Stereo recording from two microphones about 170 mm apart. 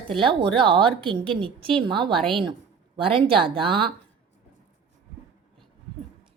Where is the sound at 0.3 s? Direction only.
30° right (ahead or behind).